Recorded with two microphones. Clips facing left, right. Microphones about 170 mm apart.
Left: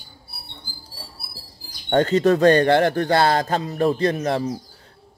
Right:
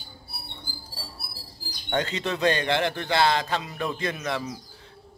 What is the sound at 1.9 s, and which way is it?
A man's voice, 45° left (ahead or behind).